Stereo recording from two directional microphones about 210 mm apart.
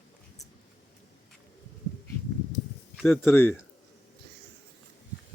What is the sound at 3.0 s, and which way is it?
Speech, 10° left (ahead or behind).